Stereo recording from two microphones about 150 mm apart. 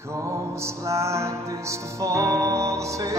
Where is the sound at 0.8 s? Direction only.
20° right (ahead or behind).